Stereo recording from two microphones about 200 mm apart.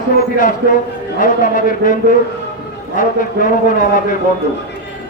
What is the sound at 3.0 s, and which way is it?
A man's voice, 40° left (ahead or behind).